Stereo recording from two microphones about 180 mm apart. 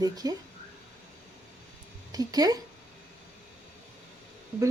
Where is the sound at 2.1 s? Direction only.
20° right (ahead or behind).